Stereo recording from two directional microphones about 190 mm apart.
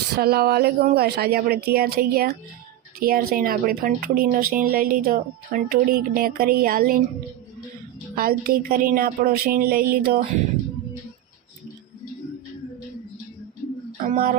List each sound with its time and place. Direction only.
0.2 s speech: 55° right (ahead or behind)
8.1 s speech: 50° right (ahead or behind)
14.0 s speech: 50° right (ahead or behind)